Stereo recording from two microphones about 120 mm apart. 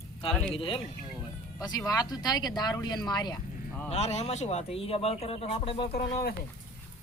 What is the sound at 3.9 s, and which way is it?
Speech, 65° left (ahead or behind).